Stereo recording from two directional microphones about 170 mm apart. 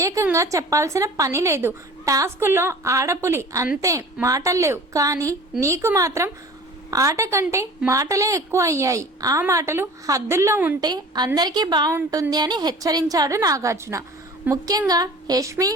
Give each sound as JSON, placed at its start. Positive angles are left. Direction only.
{"t": 0.0, "sound": "a woman's voice", "side_deg": -15}
{"t": 10.8, "sound": "a woman's voice", "side_deg": -25}
{"t": 11.9, "sound": "a woman's voice", "side_deg": -10}
{"t": 12.3, "sound": "a woman's voice", "side_deg": -25}